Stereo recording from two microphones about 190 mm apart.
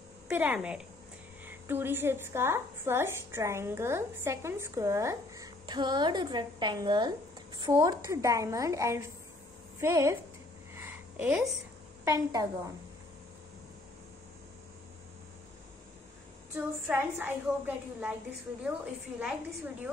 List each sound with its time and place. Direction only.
0.3 s a woman's voice: 10° right (ahead or behind)
10.7 s a sound: 10° right (ahead or behind)
12.0 s a woman's voice: 20° right (ahead or behind)
16.5 s a woman's voice: 10° right (ahead or behind)
19.1 s a woman's voice: 10° right (ahead or behind)